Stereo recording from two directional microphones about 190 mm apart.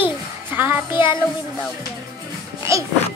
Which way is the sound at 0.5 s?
10° right (ahead or behind).